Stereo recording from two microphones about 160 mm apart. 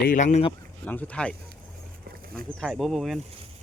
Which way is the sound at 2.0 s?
70° right (ahead or behind).